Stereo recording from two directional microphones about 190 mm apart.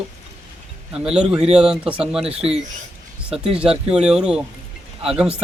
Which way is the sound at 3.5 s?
5° right (ahead or behind).